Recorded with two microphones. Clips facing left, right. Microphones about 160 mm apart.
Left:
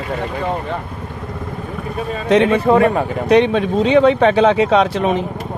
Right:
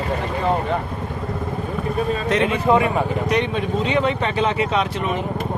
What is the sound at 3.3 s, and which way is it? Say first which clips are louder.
Speech: left 12 dB; 75° left (ahead or behind).